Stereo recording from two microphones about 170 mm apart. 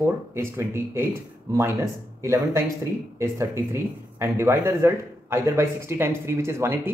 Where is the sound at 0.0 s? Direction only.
15° right (ahead or behind).